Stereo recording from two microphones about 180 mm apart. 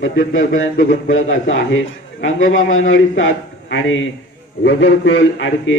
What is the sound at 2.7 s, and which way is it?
A man's voice, 90° left.